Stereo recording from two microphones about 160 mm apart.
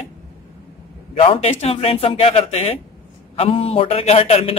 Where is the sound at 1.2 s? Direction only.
35° left (ahead or behind).